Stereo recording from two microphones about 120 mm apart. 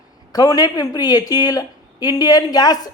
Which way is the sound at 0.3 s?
30° left (ahead or behind).